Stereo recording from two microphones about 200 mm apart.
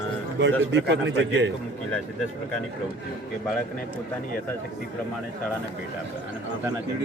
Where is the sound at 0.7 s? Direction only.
60° right (ahead or behind).